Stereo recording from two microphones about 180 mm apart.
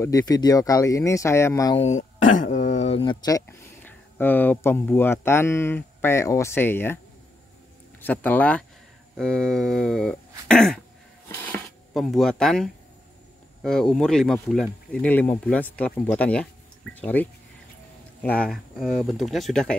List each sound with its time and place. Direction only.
0.0 s speech: 20° left (ahead or behind)
1.8 s speech: 40° left (ahead or behind); by 7.0 s 10° left (ahead or behind)
8.0 s speech: 10° left (ahead or behind)